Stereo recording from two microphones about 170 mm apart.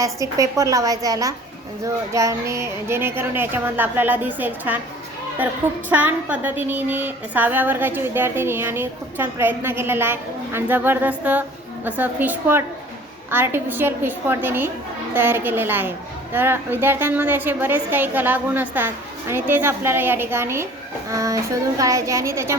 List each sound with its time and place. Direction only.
0.0 s a woman's voice: 20° right (ahead or behind)